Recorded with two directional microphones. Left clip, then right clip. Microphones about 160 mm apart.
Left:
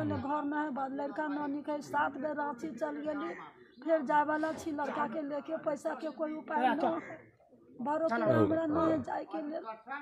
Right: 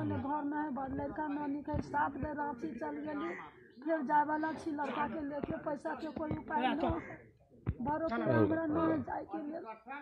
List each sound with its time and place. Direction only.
0.0 s a man's voice: 20° left (ahead or behind)
6.5 s speech: 40° left (ahead or behind)
7.8 s a man's voice: 20° left (ahead or behind)